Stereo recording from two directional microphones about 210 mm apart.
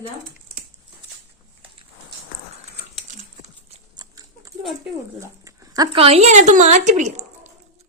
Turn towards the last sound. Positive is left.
turn(degrees=-35)  # may be behind; listen again after turning